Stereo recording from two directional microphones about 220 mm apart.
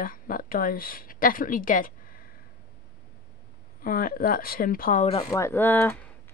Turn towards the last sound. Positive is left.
turn(degrees=10)  # may be behind; listen again after turning